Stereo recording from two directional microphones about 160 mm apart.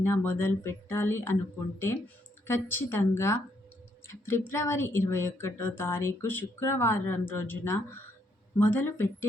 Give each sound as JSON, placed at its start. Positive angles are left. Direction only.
{"t": 0.0, "sound": "speech", "side_deg": 15}
{"t": 2.5, "sound": "speech", "side_deg": 15}